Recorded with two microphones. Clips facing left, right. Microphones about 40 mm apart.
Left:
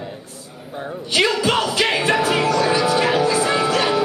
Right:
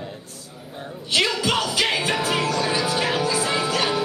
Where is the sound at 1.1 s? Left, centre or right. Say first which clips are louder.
Left 3 dB; centre.